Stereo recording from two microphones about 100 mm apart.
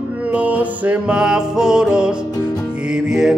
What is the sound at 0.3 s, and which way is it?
Music, 15° right (ahead or behind).